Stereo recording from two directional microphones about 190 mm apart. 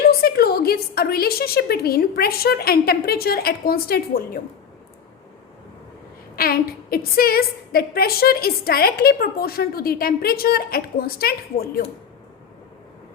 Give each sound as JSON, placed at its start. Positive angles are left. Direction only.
{"t": 0.1, "sound": "a woman's voice", "side_deg": 55}
{"t": 6.3, "sound": "a woman's voice", "side_deg": 50}